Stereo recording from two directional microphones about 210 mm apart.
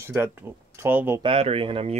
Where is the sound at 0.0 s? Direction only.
10° right (ahead or behind).